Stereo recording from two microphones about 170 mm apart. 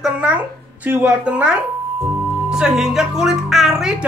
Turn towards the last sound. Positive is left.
turn(degrees=0)  # may be behind; listen again after turning